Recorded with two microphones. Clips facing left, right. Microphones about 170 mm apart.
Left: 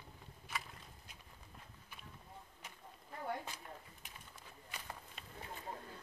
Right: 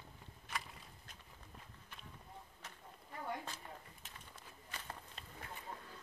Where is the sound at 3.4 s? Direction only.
15° left (ahead or behind).